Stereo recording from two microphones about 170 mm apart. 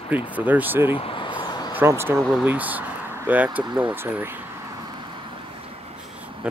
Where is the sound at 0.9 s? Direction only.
30° left (ahead or behind).